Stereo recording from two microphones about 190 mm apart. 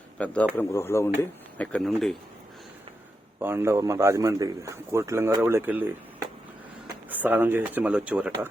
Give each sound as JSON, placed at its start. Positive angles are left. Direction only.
{"t": 0.2, "sound": "speech", "side_deg": 5}
{"t": 3.4, "sound": "a man's voice", "side_deg": -15}
{"t": 7.1, "sound": "a man's voice", "side_deg": -10}